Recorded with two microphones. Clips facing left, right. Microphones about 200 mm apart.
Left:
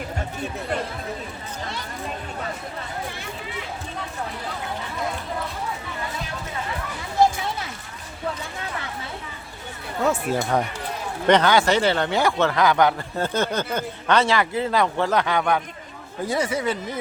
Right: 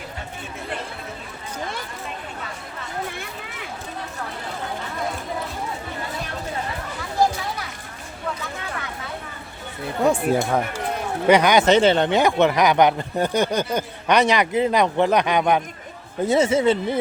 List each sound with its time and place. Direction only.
10.0 s speech: 15° right (ahead or behind)
11.3 s speech: 15° right (ahead or behind)